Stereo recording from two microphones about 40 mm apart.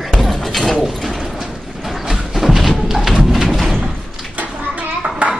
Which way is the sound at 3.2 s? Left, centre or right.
Centre.